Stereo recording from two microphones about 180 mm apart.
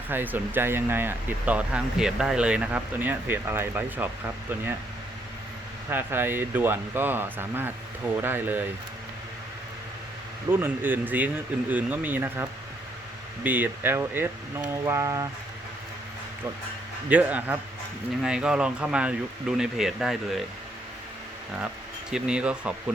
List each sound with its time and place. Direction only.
0.1 s speech: 10° right (ahead or behind)
5.9 s speech: 10° right (ahead or behind)
10.5 s speech: 10° right (ahead or behind)
17.1 s speech: 10° right (ahead or behind)
22.1 s speech: 5° right (ahead or behind)